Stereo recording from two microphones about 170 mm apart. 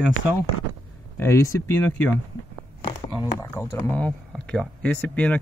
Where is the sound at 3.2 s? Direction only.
15° left (ahead or behind).